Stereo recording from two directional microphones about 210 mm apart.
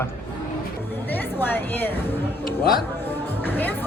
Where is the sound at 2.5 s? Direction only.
45° left (ahead or behind).